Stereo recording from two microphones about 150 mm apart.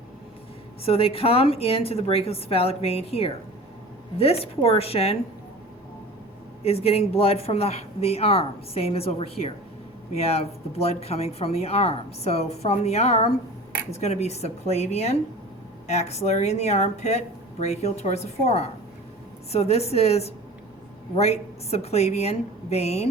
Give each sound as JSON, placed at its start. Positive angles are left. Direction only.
{"t": 0.9, "sound": "speech", "side_deg": 40}
{"t": 6.7, "sound": "speech", "side_deg": 40}